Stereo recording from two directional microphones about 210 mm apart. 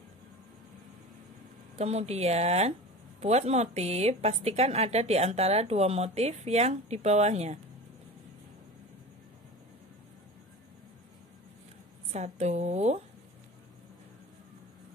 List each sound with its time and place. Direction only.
1.8 s a woman's voice: 30° right (ahead or behind)
12.1 s a woman's voice: 30° right (ahead or behind)